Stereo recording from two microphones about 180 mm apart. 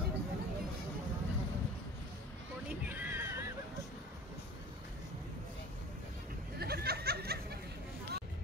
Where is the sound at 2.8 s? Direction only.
10° right (ahead or behind).